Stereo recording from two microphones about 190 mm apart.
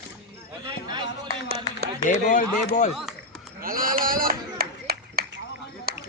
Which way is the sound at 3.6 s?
50° right (ahead or behind).